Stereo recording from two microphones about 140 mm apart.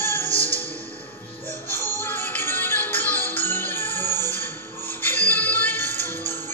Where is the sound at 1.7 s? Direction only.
15° left (ahead or behind).